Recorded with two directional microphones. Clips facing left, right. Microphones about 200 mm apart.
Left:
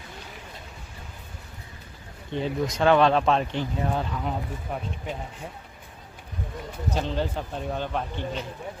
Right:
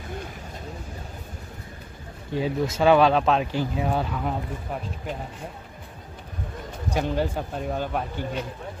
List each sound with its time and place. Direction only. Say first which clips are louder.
2.3 s speech: right 2 dB; 5° right (ahead or behind)
6.9 s a man's voice: right 3 dB; 10° right (ahead or behind)